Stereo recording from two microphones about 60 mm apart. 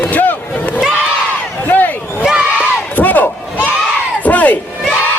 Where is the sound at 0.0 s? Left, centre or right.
Left.